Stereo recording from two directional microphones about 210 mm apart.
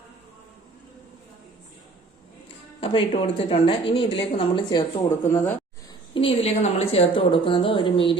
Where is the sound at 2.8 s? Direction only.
25° left (ahead or behind).